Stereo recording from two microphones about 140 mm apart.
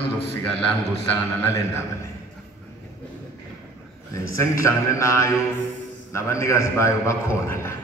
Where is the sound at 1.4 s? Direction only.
20° left (ahead or behind).